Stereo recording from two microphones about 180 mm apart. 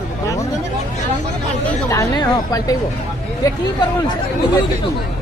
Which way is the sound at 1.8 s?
20° left (ahead or behind).